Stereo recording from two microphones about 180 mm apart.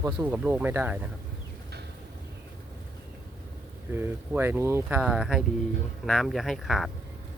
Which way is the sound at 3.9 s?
10° right (ahead or behind).